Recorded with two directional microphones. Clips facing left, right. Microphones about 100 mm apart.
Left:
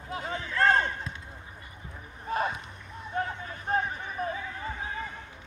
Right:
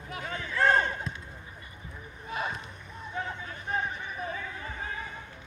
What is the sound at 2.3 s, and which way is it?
Rowboat, 40° left (ahead or behind).